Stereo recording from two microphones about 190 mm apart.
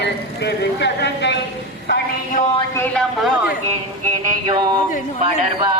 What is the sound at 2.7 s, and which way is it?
Speech, 5° left (ahead or behind).